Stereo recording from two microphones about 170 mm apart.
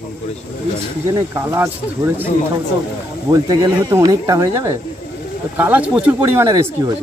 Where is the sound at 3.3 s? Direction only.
20° right (ahead or behind).